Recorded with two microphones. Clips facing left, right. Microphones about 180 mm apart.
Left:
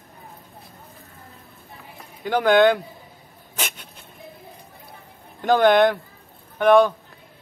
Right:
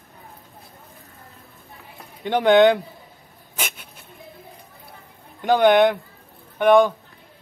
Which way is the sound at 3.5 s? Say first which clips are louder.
Even; 10° right (ahead or behind).